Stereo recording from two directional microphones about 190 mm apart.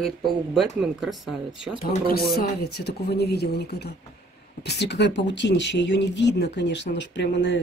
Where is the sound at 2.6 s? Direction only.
55° left (ahead or behind).